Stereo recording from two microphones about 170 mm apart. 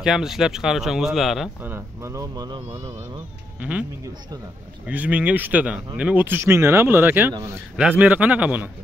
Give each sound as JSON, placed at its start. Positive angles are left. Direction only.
{"t": 0.0, "sound": "speech", "side_deg": -5}
{"t": 1.6, "sound": "speech", "side_deg": -15}
{"t": 4.8, "sound": "speech", "side_deg": -10}